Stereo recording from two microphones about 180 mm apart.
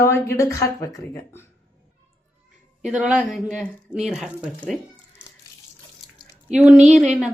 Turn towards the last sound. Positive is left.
turn(degrees=-5)  # may be behind; listen again after turning